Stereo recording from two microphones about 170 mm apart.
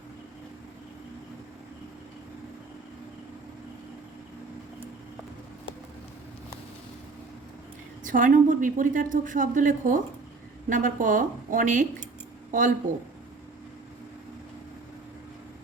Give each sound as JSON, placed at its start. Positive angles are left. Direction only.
{"t": 8.0, "sound": "a woman's voice", "side_deg": -50}